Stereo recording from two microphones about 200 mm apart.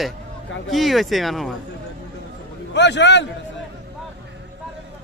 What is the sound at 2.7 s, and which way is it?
Speech, 60° left (ahead or behind).